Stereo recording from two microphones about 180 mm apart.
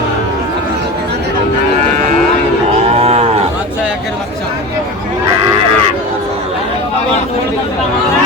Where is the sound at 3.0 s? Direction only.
35° right (ahead or behind).